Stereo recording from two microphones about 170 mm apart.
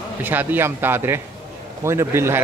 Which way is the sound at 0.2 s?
10° right (ahead or behind).